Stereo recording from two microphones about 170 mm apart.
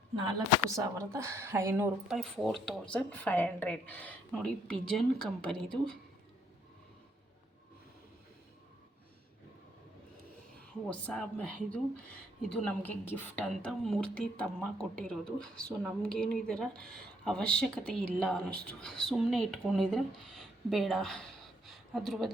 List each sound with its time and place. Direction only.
0.3 s speech: 20° right (ahead or behind)
2.1 s a woman's voice: centre (ahead or behind)
10.8 s a woman's voice: 5° left (ahead or behind)